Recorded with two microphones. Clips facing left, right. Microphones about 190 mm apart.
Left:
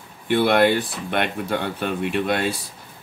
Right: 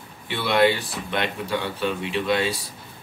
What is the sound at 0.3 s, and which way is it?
Speech, 55° left (ahead or behind).